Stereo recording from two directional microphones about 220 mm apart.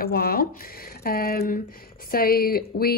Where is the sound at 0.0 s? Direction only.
45° left (ahead or behind).